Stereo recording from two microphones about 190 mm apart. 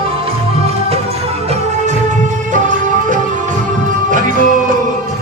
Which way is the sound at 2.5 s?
40° right (ahead or behind).